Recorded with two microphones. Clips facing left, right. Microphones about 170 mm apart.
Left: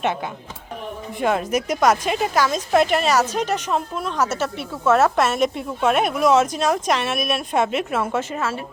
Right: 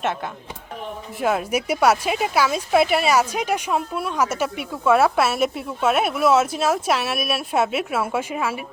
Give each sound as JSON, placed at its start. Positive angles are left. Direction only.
{"t": 1.2, "sound": "speech", "side_deg": -5}